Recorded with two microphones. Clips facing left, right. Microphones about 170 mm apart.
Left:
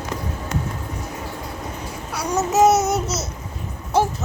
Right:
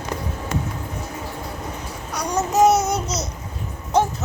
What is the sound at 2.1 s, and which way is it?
Babbling, 5° left (ahead or behind).